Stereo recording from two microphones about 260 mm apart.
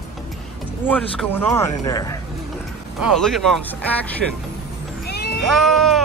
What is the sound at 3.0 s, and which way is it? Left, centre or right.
Speech, centre.